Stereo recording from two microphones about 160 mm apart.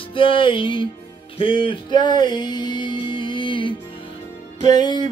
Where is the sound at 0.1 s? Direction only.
30° left (ahead or behind).